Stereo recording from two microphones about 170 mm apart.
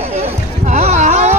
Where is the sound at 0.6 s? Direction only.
40° right (ahead or behind).